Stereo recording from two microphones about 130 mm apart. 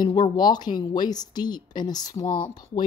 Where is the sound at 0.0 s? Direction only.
30° left (ahead or behind).